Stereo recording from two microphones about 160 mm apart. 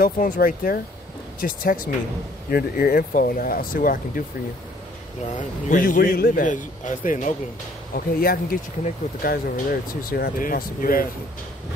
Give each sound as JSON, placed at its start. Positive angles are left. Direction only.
{"t": 0.0, "sound": "a man's voice", "side_deg": 60}
{"t": 5.2, "sound": "a man's voice", "side_deg": 55}
{"t": 7.9, "sound": "a man's voice", "side_deg": 65}